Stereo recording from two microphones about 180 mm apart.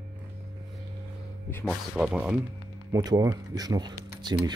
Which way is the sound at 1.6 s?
Centre (ahead or behind).